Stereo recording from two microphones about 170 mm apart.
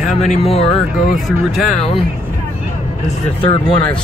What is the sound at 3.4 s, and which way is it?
Speech, 30° left (ahead or behind).